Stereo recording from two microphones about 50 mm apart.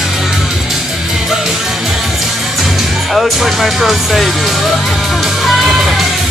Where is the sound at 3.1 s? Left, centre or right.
Centre.